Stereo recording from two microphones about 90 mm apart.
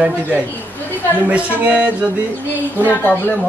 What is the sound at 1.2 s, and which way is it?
Speech, 15° right (ahead or behind).